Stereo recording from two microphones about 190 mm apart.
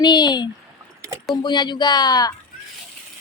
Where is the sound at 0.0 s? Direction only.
20° left (ahead or behind).